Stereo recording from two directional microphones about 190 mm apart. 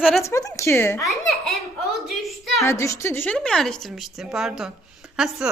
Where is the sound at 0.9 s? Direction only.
Centre (ahead or behind).